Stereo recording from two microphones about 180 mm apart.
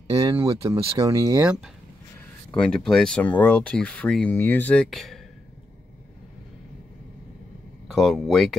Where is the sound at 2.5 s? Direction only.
5° left (ahead or behind).